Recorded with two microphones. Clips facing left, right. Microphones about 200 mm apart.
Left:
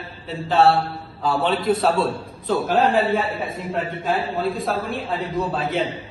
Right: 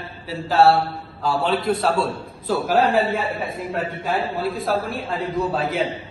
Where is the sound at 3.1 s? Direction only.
Centre (ahead or behind).